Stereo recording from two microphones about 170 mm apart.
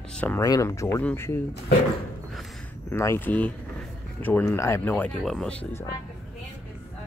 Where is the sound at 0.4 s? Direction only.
20° left (ahead or behind).